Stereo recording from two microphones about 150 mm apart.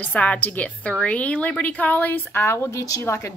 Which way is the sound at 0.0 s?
10° left (ahead or behind).